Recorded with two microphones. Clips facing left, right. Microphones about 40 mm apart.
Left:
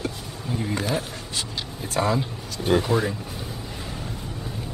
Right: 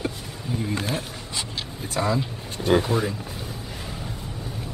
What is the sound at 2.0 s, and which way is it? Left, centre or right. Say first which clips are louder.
Speech: left 2 dB; centre.